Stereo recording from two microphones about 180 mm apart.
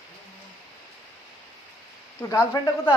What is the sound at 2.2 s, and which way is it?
Speech, 20° left (ahead or behind).